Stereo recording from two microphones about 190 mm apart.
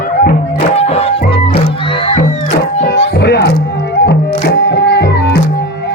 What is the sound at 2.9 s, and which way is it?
Children playing, 60° left (ahead or behind).